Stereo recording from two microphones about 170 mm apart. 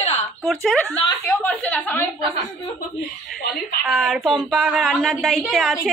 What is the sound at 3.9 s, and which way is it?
A woman's voice, centre (ahead or behind).